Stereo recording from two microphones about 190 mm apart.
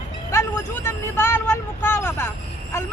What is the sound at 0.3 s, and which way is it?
Speech, 15° left (ahead or behind).